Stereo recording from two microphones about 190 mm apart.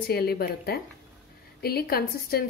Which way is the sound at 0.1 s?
55° left (ahead or behind).